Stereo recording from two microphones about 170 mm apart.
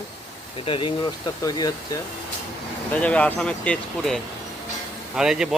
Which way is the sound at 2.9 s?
10° left (ahead or behind).